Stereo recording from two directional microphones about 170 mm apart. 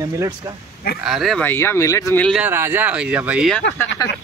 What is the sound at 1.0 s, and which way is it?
Speech, centre (ahead or behind).